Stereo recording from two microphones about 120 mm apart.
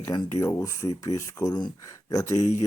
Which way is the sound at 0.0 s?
25° left (ahead or behind).